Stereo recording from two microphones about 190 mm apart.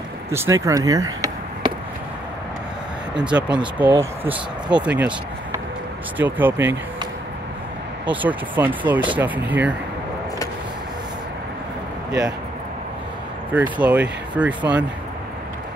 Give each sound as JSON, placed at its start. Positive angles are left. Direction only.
{"t": 0.3, "sound": "speech", "side_deg": -15}
{"t": 3.2, "sound": "speech", "side_deg": -5}
{"t": 6.1, "sound": "speech", "side_deg": -10}
{"t": 8.1, "sound": "speech", "side_deg": -10}
{"t": 12.1, "sound": "speech", "side_deg": -5}
{"t": 13.5, "sound": "speech", "side_deg": -5}